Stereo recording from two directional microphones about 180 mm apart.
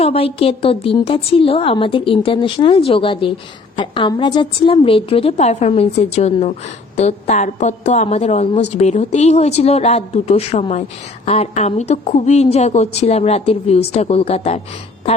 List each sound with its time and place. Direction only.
0.0 s a woman's voice: 35° left (ahead or behind)